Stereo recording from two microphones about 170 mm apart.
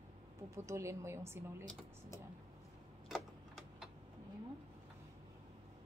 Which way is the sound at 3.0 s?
Centre (ahead or behind).